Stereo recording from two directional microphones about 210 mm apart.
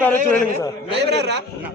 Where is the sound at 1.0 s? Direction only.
55° right (ahead or behind).